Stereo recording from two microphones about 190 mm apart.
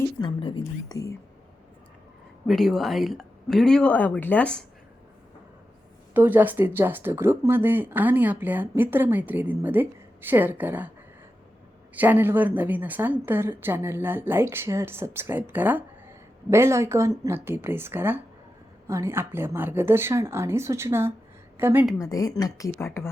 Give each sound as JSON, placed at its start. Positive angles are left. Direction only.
{"t": 0.2, "sound": "speech", "side_deg": 25}
{"t": 2.5, "sound": "speech", "side_deg": 0}
{"t": 6.1, "sound": "a woman's voice", "side_deg": -10}
{"t": 11.9, "sound": "a woman's voice", "side_deg": -10}
{"t": 22.0, "sound": "speech", "side_deg": 20}